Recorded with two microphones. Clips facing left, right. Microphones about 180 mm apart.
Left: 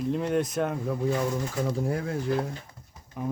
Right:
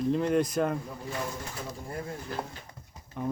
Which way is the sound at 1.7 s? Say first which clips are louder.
Left 8 dB; 90° left.